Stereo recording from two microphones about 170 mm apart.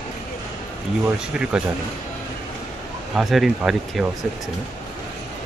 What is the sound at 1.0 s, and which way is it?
Speech, 5° right (ahead or behind).